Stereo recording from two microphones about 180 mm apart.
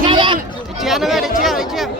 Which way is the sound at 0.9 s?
Centre (ahead or behind).